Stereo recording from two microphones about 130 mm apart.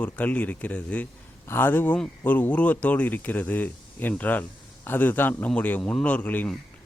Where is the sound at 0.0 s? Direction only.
10° left (ahead or behind).